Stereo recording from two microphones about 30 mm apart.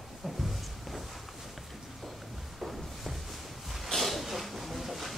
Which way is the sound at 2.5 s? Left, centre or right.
Centre.